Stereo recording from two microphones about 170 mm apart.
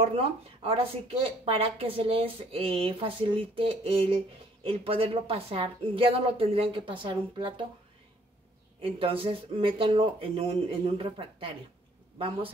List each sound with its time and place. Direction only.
0.0 s speech: 35° right (ahead or behind)
8.8 s speech: 35° right (ahead or behind)